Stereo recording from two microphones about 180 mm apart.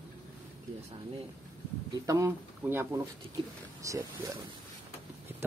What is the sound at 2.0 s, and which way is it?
Speech, 15° right (ahead or behind).